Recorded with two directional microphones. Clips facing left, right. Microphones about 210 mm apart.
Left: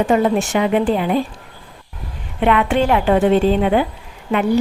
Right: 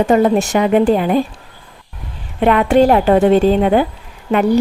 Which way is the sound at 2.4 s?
40° right (ahead or behind).